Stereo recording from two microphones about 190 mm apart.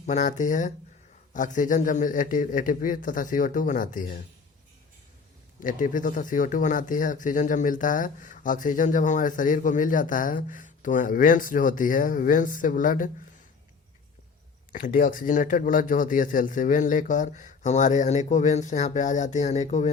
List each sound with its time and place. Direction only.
0.0 s speech: 40° left (ahead or behind)
5.5 s speech: 45° left (ahead or behind)
14.7 s speech: 45° left (ahead or behind)